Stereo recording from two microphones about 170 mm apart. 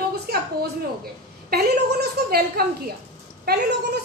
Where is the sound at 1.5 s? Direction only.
65° right (ahead or behind).